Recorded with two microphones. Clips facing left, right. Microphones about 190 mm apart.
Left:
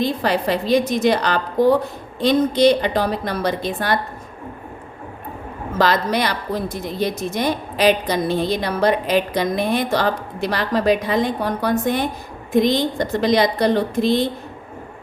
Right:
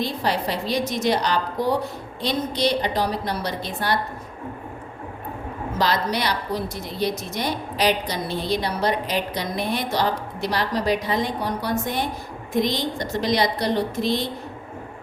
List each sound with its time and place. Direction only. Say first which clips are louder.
0.0 s a woman's voice: left 5 dB; 55° left (ahead or behind)
5.7 s a woman's voice: left 5 dB; 50° left (ahead or behind)